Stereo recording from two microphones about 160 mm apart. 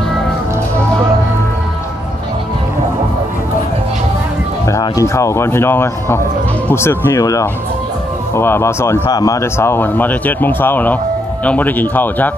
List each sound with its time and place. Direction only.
4.6 s speech: 20° left (ahead or behind)